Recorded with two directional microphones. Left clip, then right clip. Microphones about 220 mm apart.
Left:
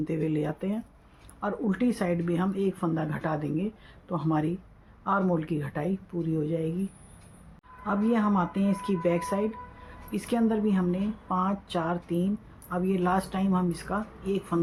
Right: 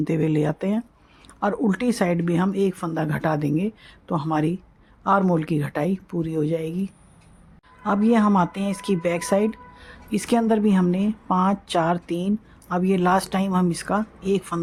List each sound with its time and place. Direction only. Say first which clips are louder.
0.0 s a woman's voice: right 7 dB; 50° right (ahead or behind)
7.9 s a woman's voice: right 7 dB; 55° right (ahead or behind)